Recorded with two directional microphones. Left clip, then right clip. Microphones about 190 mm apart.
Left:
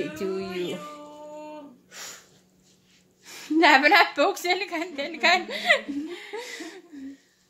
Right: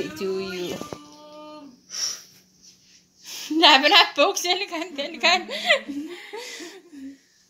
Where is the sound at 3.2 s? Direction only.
5° left (ahead or behind).